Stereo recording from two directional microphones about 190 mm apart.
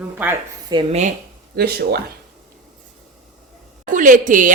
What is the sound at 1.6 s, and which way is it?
Speech, 55° right (ahead or behind).